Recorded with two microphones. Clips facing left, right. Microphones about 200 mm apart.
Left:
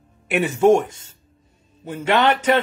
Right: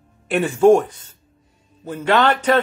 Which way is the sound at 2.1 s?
20° left (ahead or behind).